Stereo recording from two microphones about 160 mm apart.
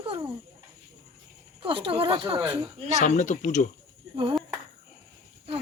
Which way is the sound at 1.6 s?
35° right (ahead or behind).